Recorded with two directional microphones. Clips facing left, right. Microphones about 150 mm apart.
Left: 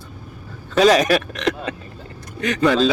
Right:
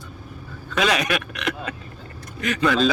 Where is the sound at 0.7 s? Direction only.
35° left (ahead or behind).